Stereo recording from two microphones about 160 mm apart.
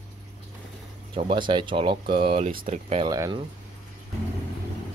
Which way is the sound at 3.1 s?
25° right (ahead or behind).